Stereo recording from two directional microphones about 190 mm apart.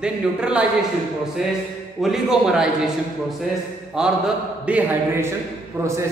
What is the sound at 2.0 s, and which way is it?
Speech, 5° right (ahead or behind).